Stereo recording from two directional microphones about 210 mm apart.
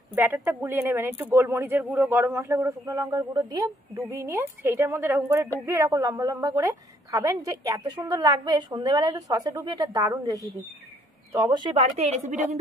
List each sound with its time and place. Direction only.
0.1 s a woman's voice: 10° right (ahead or behind); by 12.5 s 35° right (ahead or behind)